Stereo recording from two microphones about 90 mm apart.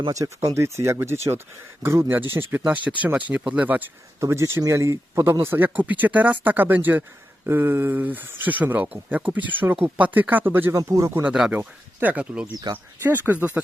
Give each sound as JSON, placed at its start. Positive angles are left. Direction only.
{"t": 0.1, "sound": "speech", "side_deg": -35}
{"t": 4.2, "sound": "speech", "side_deg": -30}
{"t": 10.8, "sound": "speech", "side_deg": -35}
{"t": 11.2, "sound": "speech", "side_deg": -10}
{"t": 11.9, "sound": "speech", "side_deg": -20}